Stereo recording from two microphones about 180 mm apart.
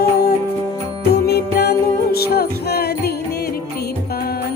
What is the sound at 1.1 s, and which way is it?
Music, 65° left (ahead or behind).